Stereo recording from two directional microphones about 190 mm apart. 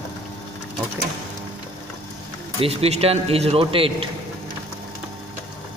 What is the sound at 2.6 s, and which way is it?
A man's voice, 30° right (ahead or behind).